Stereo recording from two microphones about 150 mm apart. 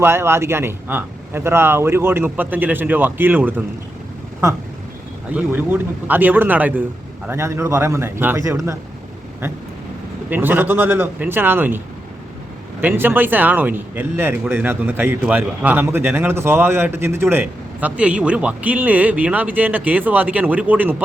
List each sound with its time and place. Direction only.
0.0 s speech: 15° right (ahead or behind)
5.3 s speech: 10° right (ahead or behind)
10.2 s speech: 15° right (ahead or behind)
12.8 s speech: 15° right (ahead or behind)